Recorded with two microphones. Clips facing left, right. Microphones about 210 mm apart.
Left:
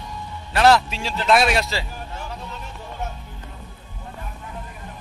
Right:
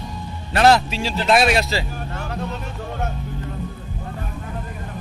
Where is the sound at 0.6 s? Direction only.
40° right (ahead or behind).